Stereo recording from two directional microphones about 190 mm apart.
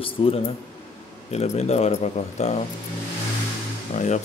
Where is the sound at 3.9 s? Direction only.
40° left (ahead or behind).